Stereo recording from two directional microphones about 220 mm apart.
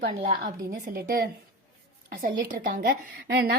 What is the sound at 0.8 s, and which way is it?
Speech, 40° right (ahead or behind).